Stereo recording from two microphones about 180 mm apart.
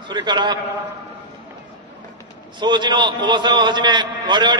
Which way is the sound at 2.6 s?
25° right (ahead or behind).